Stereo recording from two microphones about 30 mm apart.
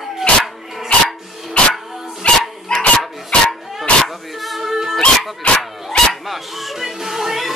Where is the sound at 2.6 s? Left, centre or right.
Left.